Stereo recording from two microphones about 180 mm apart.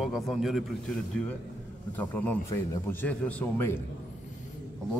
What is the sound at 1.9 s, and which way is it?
A man's voice, 10° left (ahead or behind).